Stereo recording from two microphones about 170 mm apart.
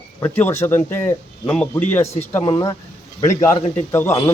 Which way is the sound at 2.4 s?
25° left (ahead or behind).